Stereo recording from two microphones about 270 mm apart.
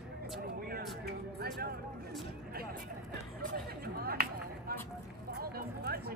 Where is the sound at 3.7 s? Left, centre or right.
Right.